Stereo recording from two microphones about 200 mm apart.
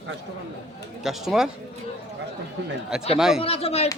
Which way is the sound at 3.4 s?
30° left (ahead or behind).